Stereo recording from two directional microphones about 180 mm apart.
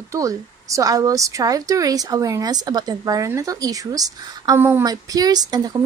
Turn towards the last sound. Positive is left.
turn(degrees=-20)  # may be behind; listen again after turning